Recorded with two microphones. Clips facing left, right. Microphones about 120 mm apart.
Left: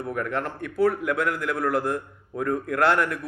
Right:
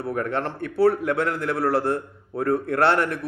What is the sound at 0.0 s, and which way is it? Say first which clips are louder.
A man's voice: right 2 dB; 30° right (ahead or behind).